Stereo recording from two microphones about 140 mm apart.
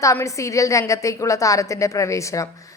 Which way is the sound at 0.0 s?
20° left (ahead or behind).